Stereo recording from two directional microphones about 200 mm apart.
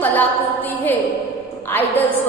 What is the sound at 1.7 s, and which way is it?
Speech, 10° left (ahead or behind).